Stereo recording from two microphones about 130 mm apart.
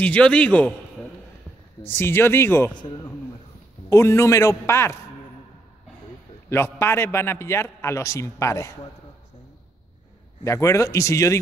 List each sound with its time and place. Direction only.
0.0 s speech: 10° left (ahead or behind)
1.9 s speech: 20° left (ahead or behind)
2.8 s a man's voice: 40° left (ahead or behind)
3.9 s a man's voice: 20° left (ahead or behind)
6.5 s a man's voice: 20° left (ahead or behind)
10.4 s a man's voice: 25° left (ahead or behind)